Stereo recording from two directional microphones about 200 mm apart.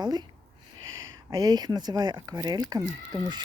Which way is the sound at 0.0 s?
20° right (ahead or behind).